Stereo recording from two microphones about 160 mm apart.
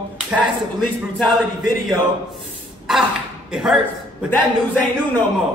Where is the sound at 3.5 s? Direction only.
5° right (ahead or behind).